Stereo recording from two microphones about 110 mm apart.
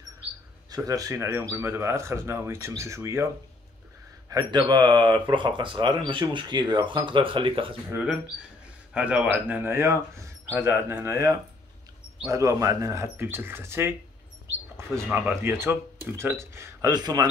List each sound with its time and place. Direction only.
0.7 s speech: 35° right (ahead or behind)
4.3 s speech: 40° right (ahead or behind); by 7.7 s 55° right (ahead or behind)
7.9 s speech: 10° right (ahead or behind)
15.1 s speech: 20° right (ahead or behind)
16.9 s speech: 40° right (ahead or behind)